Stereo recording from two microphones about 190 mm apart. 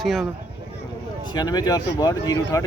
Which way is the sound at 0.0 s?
Centre (ahead or behind).